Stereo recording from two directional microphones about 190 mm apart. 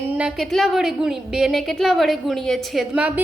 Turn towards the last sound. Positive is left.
turn(degrees=-5)  # may be behind; listen again after turning